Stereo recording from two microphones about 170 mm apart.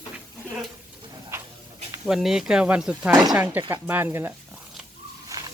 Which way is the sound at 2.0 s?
Centre (ahead or behind).